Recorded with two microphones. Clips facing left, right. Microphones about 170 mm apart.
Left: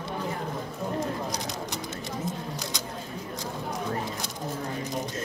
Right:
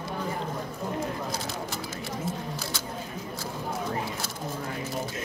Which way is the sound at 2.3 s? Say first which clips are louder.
Even; 15° left (ahead or behind).